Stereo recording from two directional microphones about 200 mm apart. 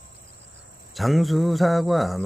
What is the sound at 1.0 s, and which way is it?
Speech, centre (ahead or behind).